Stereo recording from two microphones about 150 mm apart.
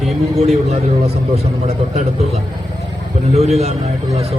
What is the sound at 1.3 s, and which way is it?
Speech, 45° right (ahead or behind).